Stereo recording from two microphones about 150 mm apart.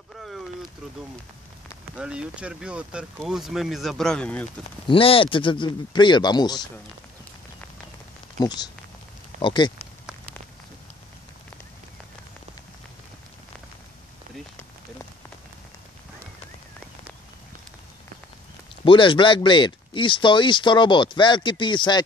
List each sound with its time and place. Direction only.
0.2 s boat: centre (ahead or behind)
2.0 s speech: 5° right (ahead or behind)
4.8 s speech: 35° left (ahead or behind)
8.4 s speech: 25° left (ahead or behind)
14.6 s rain on surface: 15° left (ahead or behind)
18.9 s speech: 35° left (ahead or behind)